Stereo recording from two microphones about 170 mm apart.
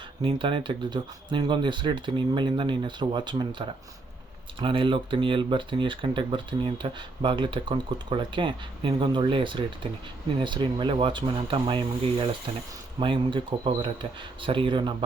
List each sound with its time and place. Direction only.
0.2 s speech: 30° right (ahead or behind)
4.6 s speech: 30° right (ahead or behind)